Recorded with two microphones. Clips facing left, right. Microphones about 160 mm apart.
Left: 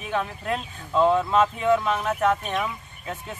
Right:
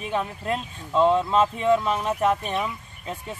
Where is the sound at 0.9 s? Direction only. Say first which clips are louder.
Even; centre (ahead or behind).